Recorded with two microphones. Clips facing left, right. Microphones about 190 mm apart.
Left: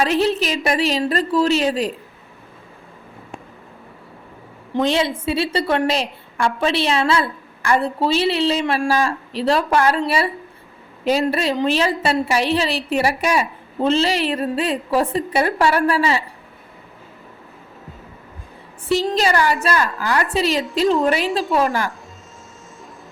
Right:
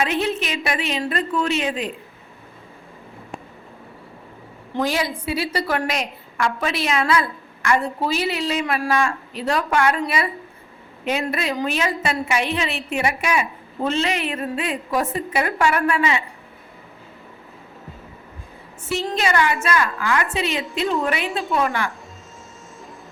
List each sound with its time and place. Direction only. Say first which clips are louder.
0.0 s a woman's voice: left 4 dB; 35° left (ahead or behind)
4.7 s a woman's voice: left 4 dB; 25° left (ahead or behind)
18.9 s a woman's voice: left 4 dB; 35° left (ahead or behind)